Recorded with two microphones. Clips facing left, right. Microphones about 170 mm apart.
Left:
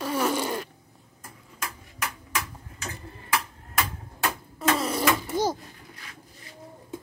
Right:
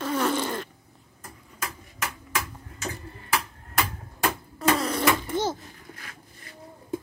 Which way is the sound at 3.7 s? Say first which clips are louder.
Right 1 dB; centre (ahead or behind).